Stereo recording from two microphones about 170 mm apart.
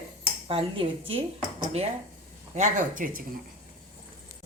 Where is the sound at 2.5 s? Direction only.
45° right (ahead or behind).